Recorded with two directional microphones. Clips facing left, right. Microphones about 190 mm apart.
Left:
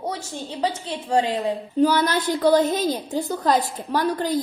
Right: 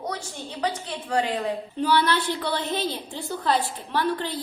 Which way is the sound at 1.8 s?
40° left (ahead or behind).